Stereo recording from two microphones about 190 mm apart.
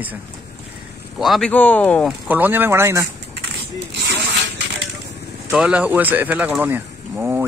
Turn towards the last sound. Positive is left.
turn(degrees=-10)  # may be behind; listen again after turning